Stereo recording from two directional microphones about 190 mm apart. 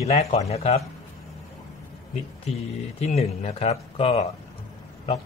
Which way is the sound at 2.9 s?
35° left (ahead or behind).